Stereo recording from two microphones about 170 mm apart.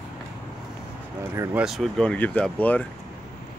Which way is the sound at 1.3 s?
15° right (ahead or behind).